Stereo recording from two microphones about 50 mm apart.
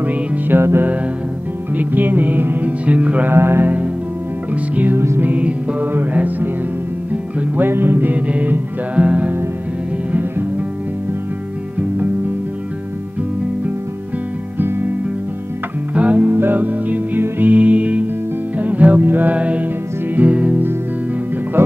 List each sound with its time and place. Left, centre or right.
0.0 s music: right
0.6 s music: right
1.8 s music: right
3.3 s music: right
4.9 s music: right
5.2 s music: right
7.6 s music: right
8.3 s music: right
14.6 s music: right
15.9 s music: right
16.3 s music: right
19.3 s music: right
21.6 s speech: right